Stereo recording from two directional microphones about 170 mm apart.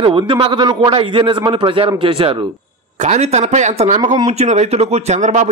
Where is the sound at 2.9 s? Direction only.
45° right (ahead or behind).